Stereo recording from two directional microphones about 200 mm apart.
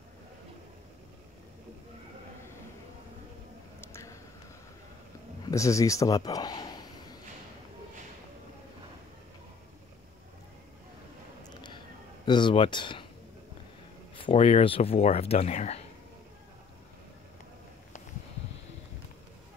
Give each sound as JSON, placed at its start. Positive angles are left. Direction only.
{"t": 3.8, "sound": "a sound", "side_deg": 15}
{"t": 5.5, "sound": "speech", "side_deg": 15}
{"t": 12.3, "sound": "speech", "side_deg": 25}
{"t": 14.1, "sound": "speech", "side_deg": 25}